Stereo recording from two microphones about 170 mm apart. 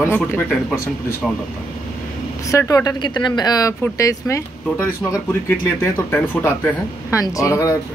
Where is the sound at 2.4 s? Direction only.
20° left (ahead or behind).